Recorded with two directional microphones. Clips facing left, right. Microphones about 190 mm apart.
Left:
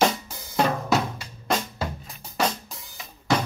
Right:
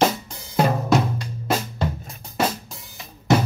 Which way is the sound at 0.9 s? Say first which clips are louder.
Right 4 dB; 5° left (ahead or behind).